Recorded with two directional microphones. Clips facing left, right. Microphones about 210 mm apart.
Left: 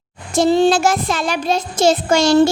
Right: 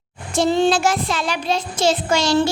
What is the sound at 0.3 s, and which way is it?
A woman's voice, 40° left (ahead or behind).